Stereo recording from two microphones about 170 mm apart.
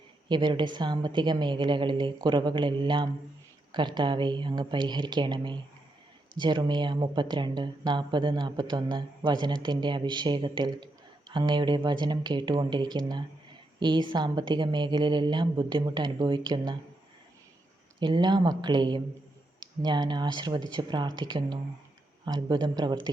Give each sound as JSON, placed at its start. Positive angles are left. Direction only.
{"t": 0.3, "sound": "speech", "side_deg": -25}
{"t": 18.0, "sound": "speech", "side_deg": -25}